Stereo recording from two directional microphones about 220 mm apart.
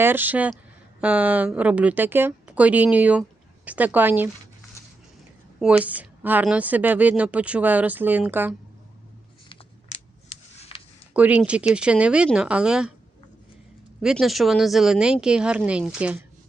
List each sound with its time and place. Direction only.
0.0 s a woman's voice: 10° right (ahead or behind)
5.5 s a woman's voice: 5° right (ahead or behind)
9.5 s a sound: 30° left (ahead or behind)
11.1 s speech: 5° right (ahead or behind)
14.0 s speech: centre (ahead or behind)